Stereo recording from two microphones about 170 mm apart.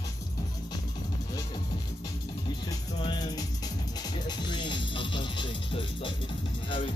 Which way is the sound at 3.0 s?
25° left (ahead or behind).